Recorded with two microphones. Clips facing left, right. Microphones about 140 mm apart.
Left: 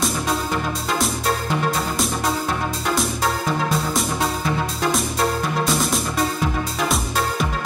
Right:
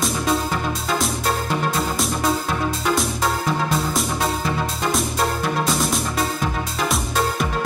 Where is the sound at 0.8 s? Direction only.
Centre (ahead or behind).